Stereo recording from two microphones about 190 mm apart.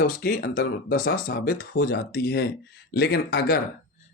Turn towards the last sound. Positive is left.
turn(degrees=55)  # may be behind; listen again after turning